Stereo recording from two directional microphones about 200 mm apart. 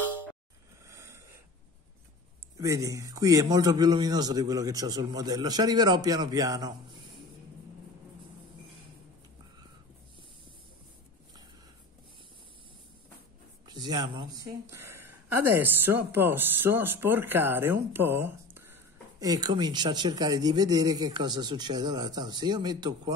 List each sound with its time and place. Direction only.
0.8 s snoring: 15° right (ahead or behind)
2.5 s speech: 15° right (ahead or behind)
13.7 s speech: 20° right (ahead or behind)